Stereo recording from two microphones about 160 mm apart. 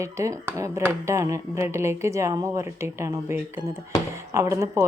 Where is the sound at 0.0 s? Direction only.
20° right (ahead or behind).